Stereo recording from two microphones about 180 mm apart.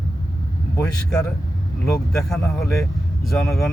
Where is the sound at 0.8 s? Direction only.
5° left (ahead or behind).